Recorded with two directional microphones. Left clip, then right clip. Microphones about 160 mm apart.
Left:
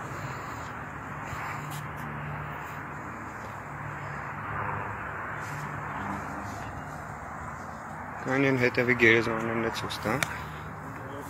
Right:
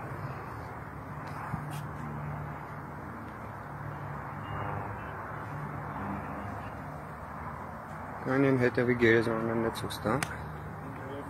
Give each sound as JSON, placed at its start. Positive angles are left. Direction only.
{"t": 8.3, "sound": "speech", "side_deg": -10}
{"t": 9.3, "sound": "speech", "side_deg": 10}
{"t": 9.7, "sound": "speech", "side_deg": -20}